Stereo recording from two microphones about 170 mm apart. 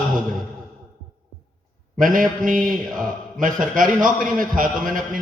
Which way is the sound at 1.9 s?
50° right (ahead or behind).